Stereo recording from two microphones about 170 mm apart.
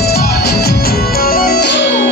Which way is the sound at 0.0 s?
65° left (ahead or behind).